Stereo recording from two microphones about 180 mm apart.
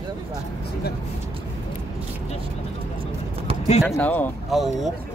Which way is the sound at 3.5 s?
30° right (ahead or behind).